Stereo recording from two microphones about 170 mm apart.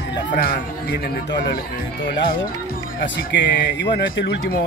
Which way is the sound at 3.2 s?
85° left.